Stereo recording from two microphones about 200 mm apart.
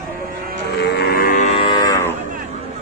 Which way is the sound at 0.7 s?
50° left (ahead or behind).